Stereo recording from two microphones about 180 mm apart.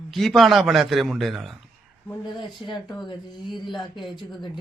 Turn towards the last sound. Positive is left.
turn(degrees=25)  # may be behind; listen again after turning